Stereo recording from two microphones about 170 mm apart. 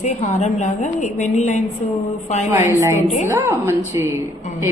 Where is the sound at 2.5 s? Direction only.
15° right (ahead or behind).